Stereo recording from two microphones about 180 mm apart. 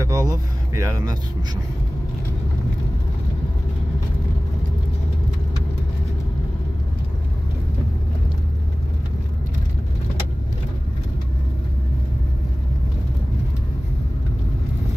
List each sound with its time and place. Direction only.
0.0 s speech: 20° right (ahead or behind)